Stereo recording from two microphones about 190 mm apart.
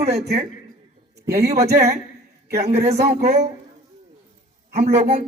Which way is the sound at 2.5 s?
35° right (ahead or behind).